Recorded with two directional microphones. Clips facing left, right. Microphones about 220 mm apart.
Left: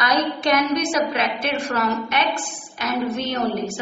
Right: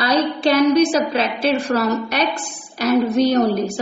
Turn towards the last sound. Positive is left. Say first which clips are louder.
# right 6 dB
turn(degrees=-40)  # may be behind; listen again after turning